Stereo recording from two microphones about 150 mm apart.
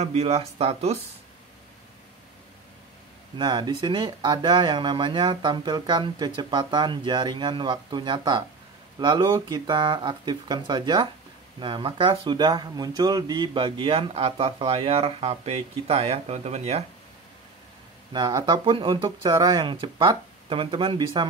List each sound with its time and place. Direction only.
0.0 s speech: 45° right (ahead or behind)
3.3 s speech: 30° right (ahead or behind); by 16.8 s 45° right (ahead or behind)
18.1 s speech: 30° right (ahead or behind)